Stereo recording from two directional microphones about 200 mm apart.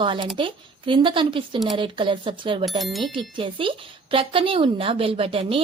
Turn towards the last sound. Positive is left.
turn(degrees=-25)  # may be behind; listen again after turning